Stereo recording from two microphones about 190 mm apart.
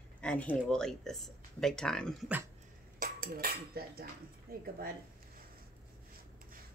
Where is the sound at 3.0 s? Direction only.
50° right (ahead or behind).